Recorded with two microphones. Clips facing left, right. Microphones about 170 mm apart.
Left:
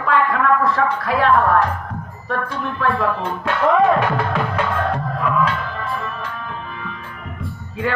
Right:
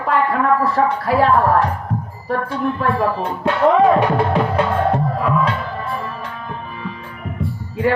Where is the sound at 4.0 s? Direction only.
35° right (ahead or behind).